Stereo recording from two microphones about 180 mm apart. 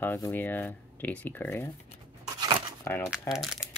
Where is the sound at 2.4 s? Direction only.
25° right (ahead or behind).